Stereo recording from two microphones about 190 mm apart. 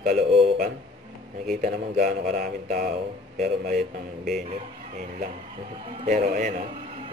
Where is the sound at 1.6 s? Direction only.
45° right (ahead or behind).